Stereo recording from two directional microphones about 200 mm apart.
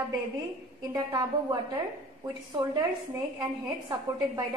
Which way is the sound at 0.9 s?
20° right (ahead or behind).